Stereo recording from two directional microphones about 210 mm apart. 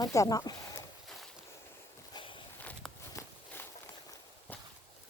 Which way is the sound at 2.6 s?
5° left (ahead or behind).